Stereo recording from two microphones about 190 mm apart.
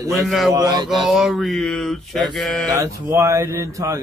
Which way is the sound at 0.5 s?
20° right (ahead or behind).